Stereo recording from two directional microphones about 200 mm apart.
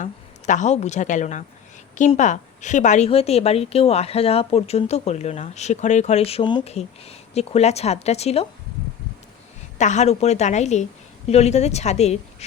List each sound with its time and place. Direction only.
0.0 s a woman's voice: 40° left (ahead or behind)
9.7 s a woman's voice: 35° left (ahead or behind)